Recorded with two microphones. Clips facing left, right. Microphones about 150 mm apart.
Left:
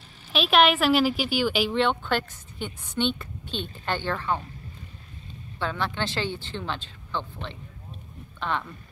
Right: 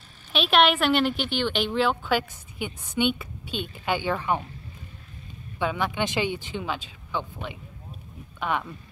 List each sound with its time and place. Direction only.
0.3 s speech: centre (ahead or behind)
5.6 s speech: 10° right (ahead or behind)